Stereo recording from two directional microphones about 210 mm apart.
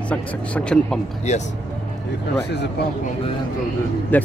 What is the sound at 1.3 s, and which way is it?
Speech, 30° left (ahead or behind).